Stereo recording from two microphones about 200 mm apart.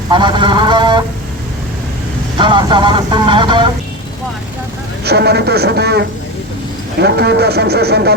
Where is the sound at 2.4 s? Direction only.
25° right (ahead or behind).